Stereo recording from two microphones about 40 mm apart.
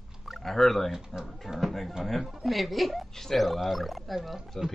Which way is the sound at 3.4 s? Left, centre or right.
Centre.